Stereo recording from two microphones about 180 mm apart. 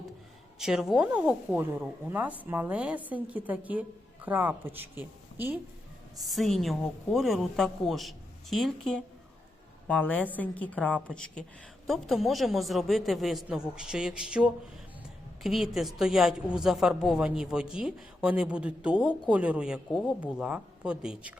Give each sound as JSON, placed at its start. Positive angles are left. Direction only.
{"t": 0.6, "sound": "a woman's voice", "side_deg": 0}
{"t": 6.2, "sound": "a woman's voice", "side_deg": 0}